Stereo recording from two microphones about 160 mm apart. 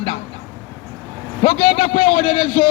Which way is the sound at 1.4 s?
40° left (ahead or behind).